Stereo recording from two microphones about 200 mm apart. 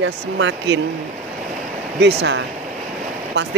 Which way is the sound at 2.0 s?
60° right (ahead or behind).